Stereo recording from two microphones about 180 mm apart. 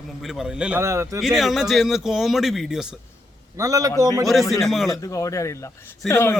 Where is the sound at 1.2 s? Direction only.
Centre (ahead or behind).